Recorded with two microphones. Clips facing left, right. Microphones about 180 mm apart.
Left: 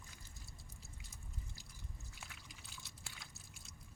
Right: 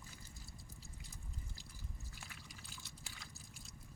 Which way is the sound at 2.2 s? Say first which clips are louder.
Right 1 dB; centre (ahead or behind).